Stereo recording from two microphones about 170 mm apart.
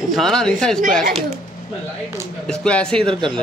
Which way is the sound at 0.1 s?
5° left (ahead or behind).